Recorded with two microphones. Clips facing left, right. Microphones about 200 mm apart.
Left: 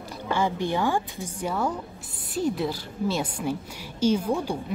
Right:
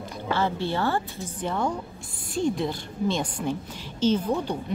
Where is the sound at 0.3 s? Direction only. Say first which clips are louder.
Left 1 dB; 15° left (ahead or behind).